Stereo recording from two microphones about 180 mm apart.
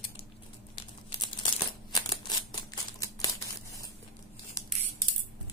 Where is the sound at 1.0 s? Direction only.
25° left (ahead or behind).